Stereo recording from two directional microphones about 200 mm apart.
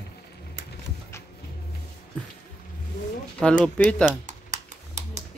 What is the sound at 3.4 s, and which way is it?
Speech, 5° left (ahead or behind).